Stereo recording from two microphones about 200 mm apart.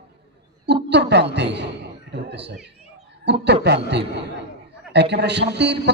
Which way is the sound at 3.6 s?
55° right (ahead or behind).